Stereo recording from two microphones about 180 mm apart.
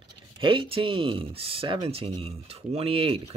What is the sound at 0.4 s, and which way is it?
Speech, 30° right (ahead or behind).